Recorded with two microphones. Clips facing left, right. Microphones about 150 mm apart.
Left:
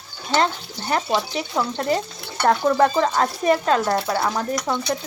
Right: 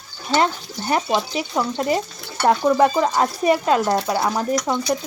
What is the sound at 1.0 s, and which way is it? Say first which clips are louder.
Speech: right 1 dB; centre (ahead or behind).